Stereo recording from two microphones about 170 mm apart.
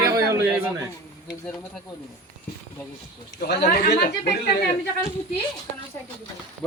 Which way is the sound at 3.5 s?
60° left (ahead or behind).